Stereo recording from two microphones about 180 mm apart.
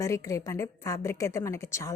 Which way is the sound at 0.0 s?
20° left (ahead or behind).